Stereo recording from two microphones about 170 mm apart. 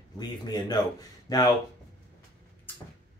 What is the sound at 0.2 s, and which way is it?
Speech, 25° left (ahead or behind).